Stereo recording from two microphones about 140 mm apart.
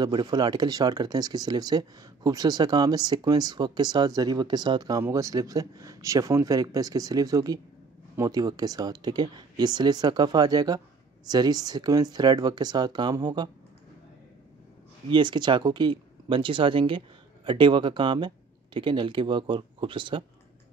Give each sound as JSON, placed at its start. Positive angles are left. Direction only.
{"t": 0.0, "sound": "speech", "side_deg": -30}
{"t": 15.0, "sound": "speech", "side_deg": -35}